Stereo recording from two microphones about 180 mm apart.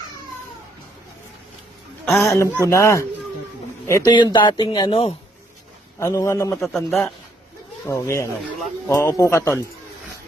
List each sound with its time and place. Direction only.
2.1 s speech: centre (ahead or behind)
2.4 s a man's voice: 15° left (ahead or behind); by 5.1 s 35° left (ahead or behind)
6.0 s speech: 15° left (ahead or behind)
6.6 s speech: centre (ahead or behind)
7.9 s speech: 15° left (ahead or behind)